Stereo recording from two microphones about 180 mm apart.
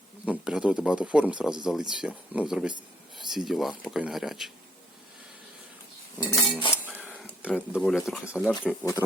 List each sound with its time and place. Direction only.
0.3 s speech: 5° right (ahead or behind)
6.2 s cutlery: 5° right (ahead or behind)
6.8 s a sound: 10° left (ahead or behind)
7.8 s speech: centre (ahead or behind)
8.6 s speech: 15° left (ahead or behind)